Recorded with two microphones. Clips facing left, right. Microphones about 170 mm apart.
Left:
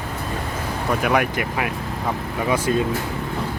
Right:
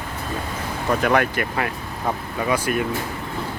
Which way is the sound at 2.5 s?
25° left (ahead or behind).